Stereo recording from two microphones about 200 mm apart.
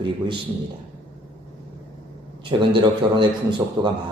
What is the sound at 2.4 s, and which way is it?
A man's voice, 25° right (ahead or behind).